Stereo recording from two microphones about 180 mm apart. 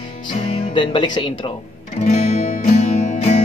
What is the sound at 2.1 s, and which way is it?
Music, 40° left (ahead or behind).